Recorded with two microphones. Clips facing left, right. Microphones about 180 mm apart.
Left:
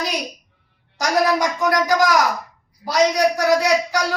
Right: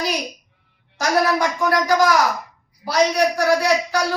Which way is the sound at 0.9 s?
15° left (ahead or behind).